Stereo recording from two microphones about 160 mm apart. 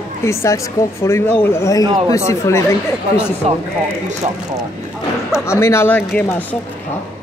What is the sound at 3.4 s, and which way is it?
Speech, 40° right (ahead or behind).